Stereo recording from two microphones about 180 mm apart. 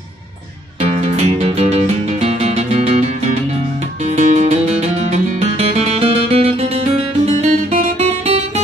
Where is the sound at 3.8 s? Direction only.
40° right (ahead or behind).